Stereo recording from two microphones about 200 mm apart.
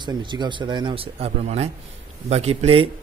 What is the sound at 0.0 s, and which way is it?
Speech, 20° right (ahead or behind).